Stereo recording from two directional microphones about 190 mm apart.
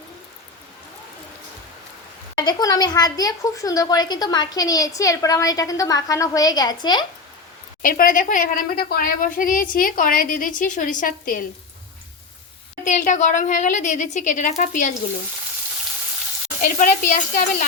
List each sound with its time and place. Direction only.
2.3 s a woman's voice: 20° left (ahead or behind)
7.8 s a woman's voice: 45° left (ahead or behind)
12.8 s a woman's voice: 40° left (ahead or behind)
16.6 s a woman's voice: 45° left (ahead or behind)